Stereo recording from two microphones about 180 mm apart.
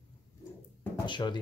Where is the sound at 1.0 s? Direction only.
25° left (ahead or behind).